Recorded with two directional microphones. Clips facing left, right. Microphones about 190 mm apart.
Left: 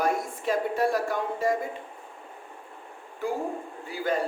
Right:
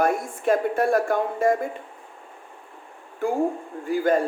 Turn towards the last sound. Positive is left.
turn(degrees=-50)  # may be behind; listen again after turning